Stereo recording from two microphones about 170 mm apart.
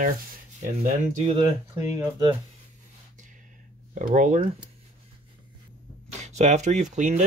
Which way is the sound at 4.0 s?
45° right (ahead or behind).